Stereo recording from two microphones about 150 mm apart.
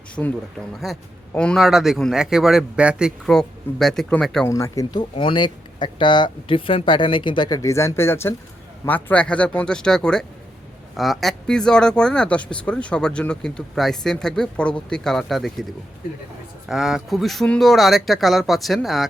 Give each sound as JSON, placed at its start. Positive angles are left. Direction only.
{"t": 0.2, "sound": "speech", "side_deg": 10}
{"t": 4.4, "sound": "speech", "side_deg": 20}
{"t": 16.6, "sound": "speech", "side_deg": -5}